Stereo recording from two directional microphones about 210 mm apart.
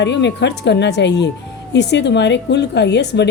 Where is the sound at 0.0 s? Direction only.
55° left (ahead or behind).